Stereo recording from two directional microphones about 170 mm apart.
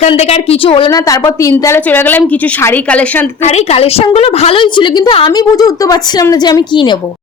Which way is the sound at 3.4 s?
40° left (ahead or behind).